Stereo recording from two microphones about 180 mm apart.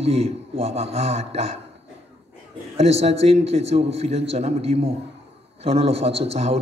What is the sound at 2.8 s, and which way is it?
A man's voice, 35° right (ahead or behind).